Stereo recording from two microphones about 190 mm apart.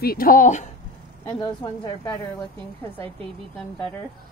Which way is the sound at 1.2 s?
20° left (ahead or behind).